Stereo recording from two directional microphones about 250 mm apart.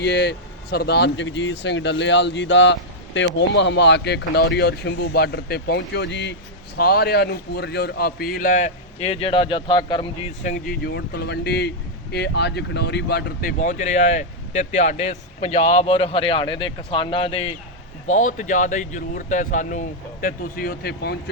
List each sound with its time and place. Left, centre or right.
0.0 s a man's voice: left